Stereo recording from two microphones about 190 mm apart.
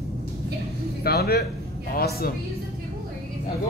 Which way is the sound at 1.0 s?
55° left (ahead or behind).